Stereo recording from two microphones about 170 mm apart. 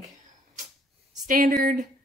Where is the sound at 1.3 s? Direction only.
55° right (ahead or behind).